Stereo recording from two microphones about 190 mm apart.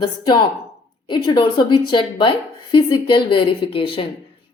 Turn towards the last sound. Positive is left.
turn(degrees=30)  # may be behind; listen again after turning